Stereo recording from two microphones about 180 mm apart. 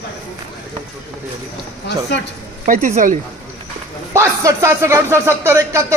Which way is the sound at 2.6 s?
45° right (ahead or behind).